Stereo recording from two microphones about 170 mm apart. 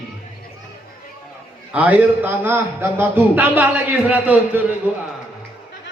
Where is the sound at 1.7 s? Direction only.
10° right (ahead or behind).